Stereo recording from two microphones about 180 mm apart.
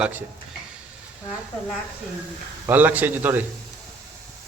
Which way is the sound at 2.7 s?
10° right (ahead or behind).